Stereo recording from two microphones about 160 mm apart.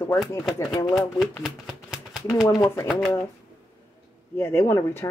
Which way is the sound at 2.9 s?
5° left (ahead or behind).